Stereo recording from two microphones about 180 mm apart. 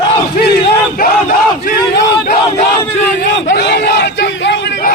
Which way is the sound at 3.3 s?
65° left (ahead or behind).